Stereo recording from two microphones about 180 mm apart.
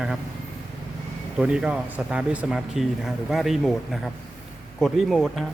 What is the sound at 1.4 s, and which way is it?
Speech, 5° right (ahead or behind).